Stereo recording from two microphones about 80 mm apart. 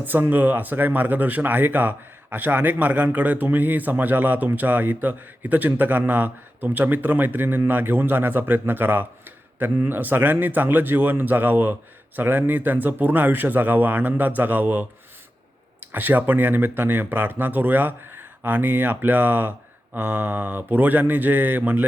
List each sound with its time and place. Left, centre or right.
0.0 s speech: right